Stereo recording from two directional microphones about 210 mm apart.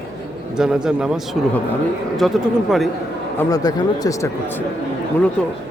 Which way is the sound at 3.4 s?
15° left (ahead or behind).